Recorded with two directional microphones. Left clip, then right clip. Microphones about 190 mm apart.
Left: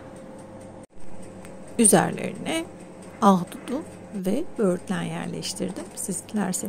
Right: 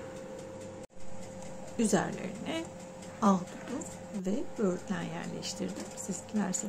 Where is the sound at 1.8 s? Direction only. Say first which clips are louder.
Left 11 dB; 45° left (ahead or behind).